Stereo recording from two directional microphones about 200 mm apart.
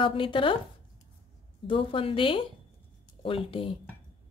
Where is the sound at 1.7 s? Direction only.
25° left (ahead or behind).